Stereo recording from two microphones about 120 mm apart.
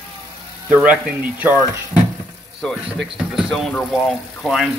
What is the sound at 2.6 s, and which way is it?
Speech, centre (ahead or behind).